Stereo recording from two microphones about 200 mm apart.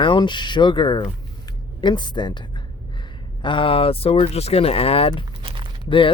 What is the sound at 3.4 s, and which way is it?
Speech, 25° left (ahead or behind).